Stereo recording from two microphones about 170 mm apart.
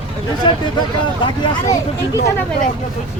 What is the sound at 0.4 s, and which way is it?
Speech, 25° left (ahead or behind).